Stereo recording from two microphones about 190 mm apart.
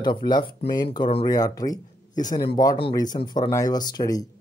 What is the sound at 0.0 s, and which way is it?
Speech, 25° left (ahead or behind).